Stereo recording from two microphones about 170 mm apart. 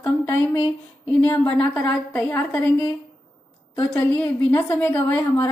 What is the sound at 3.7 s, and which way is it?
Speech, 10° left (ahead or behind).